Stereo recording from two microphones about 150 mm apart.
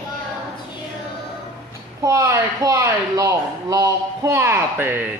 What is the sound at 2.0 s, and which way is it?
Speech, 20° right (ahead or behind).